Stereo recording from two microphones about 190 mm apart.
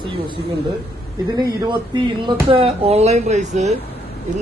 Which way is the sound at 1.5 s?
25° right (ahead or behind).